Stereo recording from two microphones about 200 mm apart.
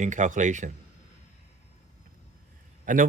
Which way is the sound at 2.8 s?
40° right (ahead or behind).